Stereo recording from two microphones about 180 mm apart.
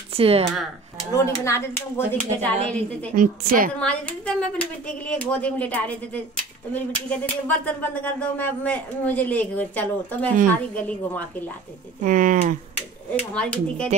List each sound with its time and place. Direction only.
0.1 s speech: 35° right (ahead or behind)
1.1 s speech: 15° left (ahead or behind)
3.2 s speech: 50° right (ahead or behind)
3.8 s speech: 5° left (ahead or behind)
12.0 s speech: 45° right (ahead or behind)
13.3 s speech: 5° left (ahead or behind)